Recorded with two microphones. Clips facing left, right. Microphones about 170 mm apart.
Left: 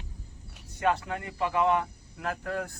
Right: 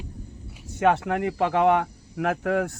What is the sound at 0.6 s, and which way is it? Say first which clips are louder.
Speech: right 6 dB; 75° right (ahead or behind).